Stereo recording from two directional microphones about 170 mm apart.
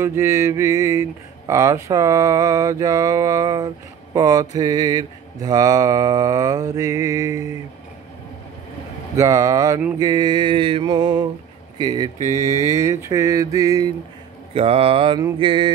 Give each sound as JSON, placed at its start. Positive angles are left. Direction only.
{"t": 0.0, "sound": "mantra", "side_deg": -15}
{"t": 9.1, "sound": "mantra", "side_deg": -20}
{"t": 12.2, "sound": "mantra", "side_deg": -45}
{"t": 12.4, "sound": "speech", "side_deg": 20}
{"t": 12.7, "sound": "mantra", "side_deg": -15}
{"t": 14.5, "sound": "speech", "side_deg": -35}
{"t": 15.3, "sound": "mantra", "side_deg": -30}